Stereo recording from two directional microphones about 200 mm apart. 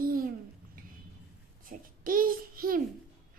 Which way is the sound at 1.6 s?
45° right (ahead or behind).